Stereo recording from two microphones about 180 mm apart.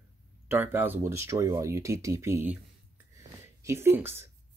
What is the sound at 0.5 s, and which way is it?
Speech, 10° right (ahead or behind).